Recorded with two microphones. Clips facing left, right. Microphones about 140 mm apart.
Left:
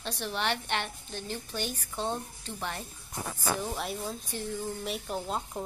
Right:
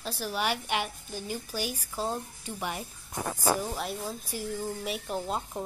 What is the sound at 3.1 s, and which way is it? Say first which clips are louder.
Speech: right 4 dB; 50° right (ahead or behind).